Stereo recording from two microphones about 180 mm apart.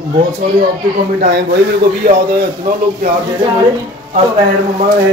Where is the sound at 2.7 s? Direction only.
50° right (ahead or behind).